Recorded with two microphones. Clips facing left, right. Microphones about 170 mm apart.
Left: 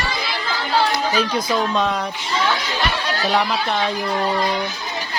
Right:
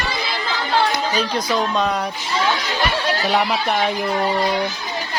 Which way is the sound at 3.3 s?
10° right (ahead or behind).